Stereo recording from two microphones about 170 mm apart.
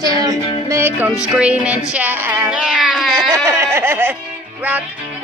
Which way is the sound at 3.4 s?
15° right (ahead or behind).